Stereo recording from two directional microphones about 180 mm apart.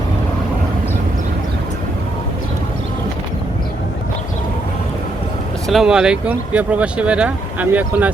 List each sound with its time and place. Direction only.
5.6 s speech: centre (ahead or behind)